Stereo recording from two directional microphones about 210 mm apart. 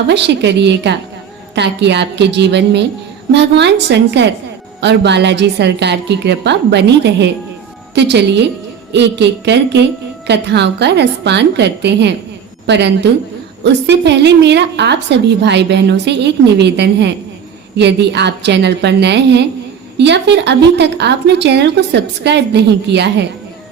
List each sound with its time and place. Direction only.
0.1 s a woman's voice: 55° right (ahead or behind)